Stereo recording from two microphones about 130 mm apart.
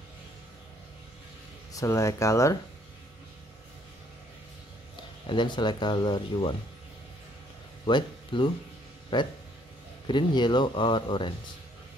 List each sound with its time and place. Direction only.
1.7 s speech: 25° left (ahead or behind)
5.2 s speech: 40° left (ahead or behind)
7.8 s speech: 40° left (ahead or behind)